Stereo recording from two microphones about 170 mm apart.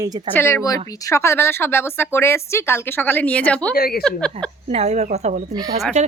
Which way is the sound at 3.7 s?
60° left (ahead or behind).